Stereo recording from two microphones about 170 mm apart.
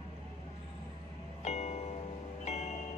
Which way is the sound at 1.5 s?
40° left (ahead or behind).